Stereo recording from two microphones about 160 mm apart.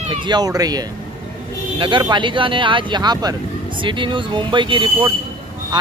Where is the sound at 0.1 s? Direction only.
30° right (ahead or behind).